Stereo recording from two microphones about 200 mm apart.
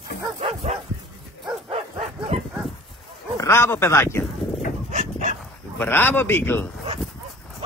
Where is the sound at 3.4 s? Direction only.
10° left (ahead or behind).